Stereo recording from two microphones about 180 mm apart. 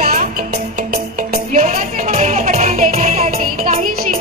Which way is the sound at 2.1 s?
40° right (ahead or behind).